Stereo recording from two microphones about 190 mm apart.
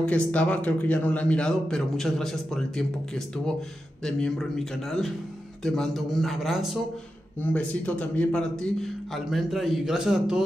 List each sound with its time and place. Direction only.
0.0 s a man's voice: 5° left (ahead or behind)